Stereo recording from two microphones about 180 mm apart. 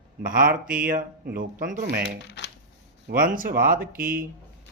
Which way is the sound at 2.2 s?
75° left (ahead or behind).